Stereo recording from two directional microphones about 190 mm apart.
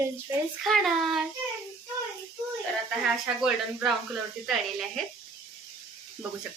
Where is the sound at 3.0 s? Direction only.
5° right (ahead or behind).